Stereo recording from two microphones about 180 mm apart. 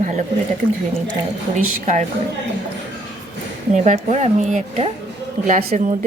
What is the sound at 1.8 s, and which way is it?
Speech, 40° right (ahead or behind).